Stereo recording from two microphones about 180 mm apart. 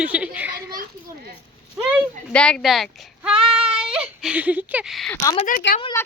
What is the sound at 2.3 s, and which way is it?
Speech, 5° left (ahead or behind).